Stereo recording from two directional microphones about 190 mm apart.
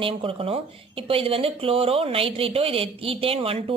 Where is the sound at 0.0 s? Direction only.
30° right (ahead or behind).